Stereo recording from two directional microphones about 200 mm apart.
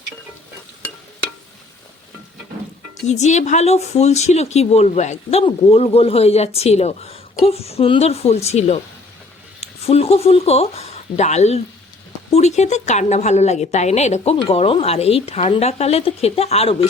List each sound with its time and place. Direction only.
3.1 s speech: 35° left (ahead or behind)